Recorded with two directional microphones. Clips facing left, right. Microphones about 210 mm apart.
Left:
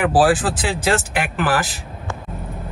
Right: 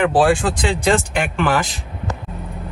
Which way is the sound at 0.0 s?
5° left (ahead or behind).